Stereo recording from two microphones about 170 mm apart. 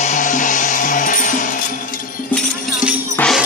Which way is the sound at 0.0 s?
45° left (ahead or behind).